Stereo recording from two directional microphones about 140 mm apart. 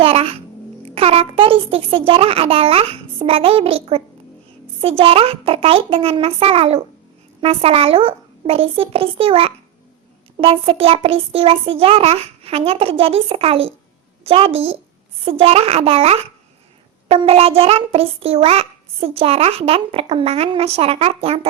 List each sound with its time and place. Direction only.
0.0 s babbling: 45° right (ahead or behind)
0.9 s a child's voice: 45° right (ahead or behind)